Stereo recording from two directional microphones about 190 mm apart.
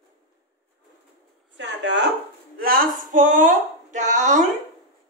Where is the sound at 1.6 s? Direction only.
65° right (ahead or behind).